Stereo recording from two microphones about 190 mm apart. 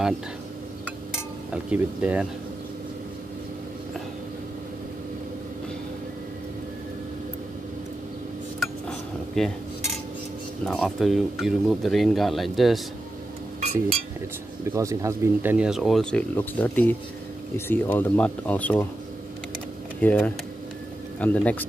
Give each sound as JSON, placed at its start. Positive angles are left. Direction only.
{"t": 1.5, "sound": "speech", "side_deg": -5}
{"t": 8.5, "sound": "a sound", "side_deg": 0}
{"t": 10.6, "sound": "speech", "side_deg": 5}
{"t": 13.6, "sound": "chink", "side_deg": -30}
{"t": 14.6, "sound": "speech", "side_deg": -15}
{"t": 20.0, "sound": "speech", "side_deg": 10}